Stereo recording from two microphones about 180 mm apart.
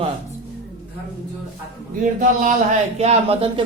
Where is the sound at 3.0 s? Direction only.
35° right (ahead or behind).